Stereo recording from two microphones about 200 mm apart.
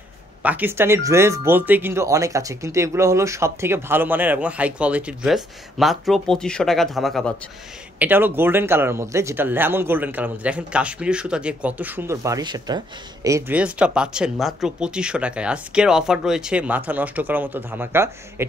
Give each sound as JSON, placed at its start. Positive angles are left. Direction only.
{"t": 0.4, "sound": "speech", "side_deg": -10}
{"t": 8.0, "sound": "speech", "side_deg": -10}